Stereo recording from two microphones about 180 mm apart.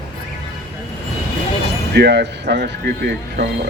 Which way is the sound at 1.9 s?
65° right (ahead or behind).